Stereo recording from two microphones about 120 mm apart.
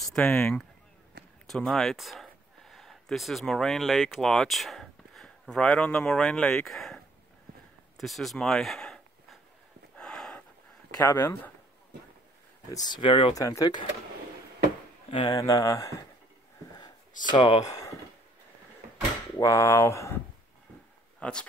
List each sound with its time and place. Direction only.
0.0 s speech: 5° left (ahead or behind)
8.0 s a sound: centre (ahead or behind)
11.0 s speech: 20° left (ahead or behind)
12.8 s speech: 40° left (ahead or behind)
13.4 s speech: 30° left (ahead or behind)
15.0 s speech: 45° left (ahead or behind)
15.3 s speech: 30° left (ahead or behind)
17.3 s speech: 40° left (ahead or behind)
17.6 s speech: 30° left (ahead or behind)
19.3 s speech: 25° left (ahead or behind)
21.2 s speech: 10° left (ahead or behind)